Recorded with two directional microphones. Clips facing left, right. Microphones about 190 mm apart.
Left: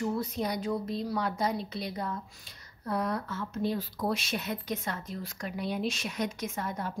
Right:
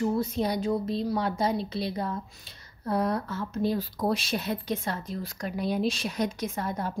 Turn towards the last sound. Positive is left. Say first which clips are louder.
# right 4 dB
turn(degrees=-35)  # may be behind; listen again after turning